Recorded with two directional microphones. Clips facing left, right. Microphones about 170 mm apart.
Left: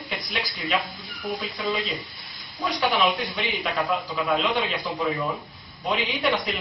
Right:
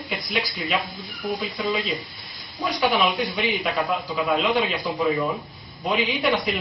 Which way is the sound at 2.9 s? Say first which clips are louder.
Right 1 dB; 5° right (ahead or behind).